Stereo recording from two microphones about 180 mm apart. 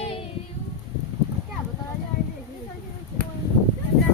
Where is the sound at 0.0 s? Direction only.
30° left (ahead or behind).